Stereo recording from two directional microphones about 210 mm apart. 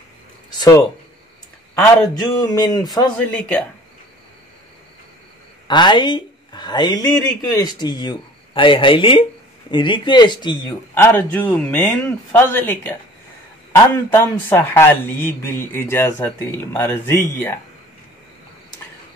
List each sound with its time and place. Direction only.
0.5 s a sound: 20° left (ahead or behind)
2.1 s speech: 20° left (ahead or behind)
3.2 s speech: 5° left (ahead or behind)
5.7 s speech: 20° left (ahead or behind)
14.1 s speech: 10° left (ahead or behind)